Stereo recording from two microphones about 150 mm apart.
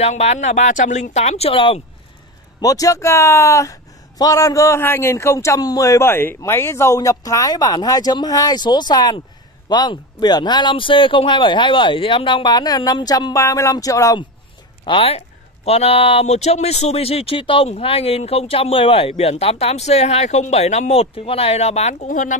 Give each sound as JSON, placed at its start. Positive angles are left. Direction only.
{"t": 0.0, "sound": "speech", "side_deg": 45}
{"t": 2.6, "sound": "a man's voice", "side_deg": 25}
{"t": 14.9, "sound": "speech", "side_deg": 40}